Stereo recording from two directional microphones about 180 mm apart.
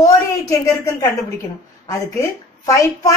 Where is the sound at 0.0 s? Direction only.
15° left (ahead or behind).